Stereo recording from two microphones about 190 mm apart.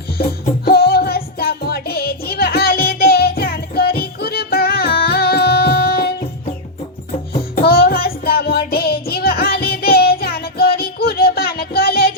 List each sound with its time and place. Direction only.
0.2 s music: 55° left (ahead or behind)
7.5 s music: 55° left (ahead or behind)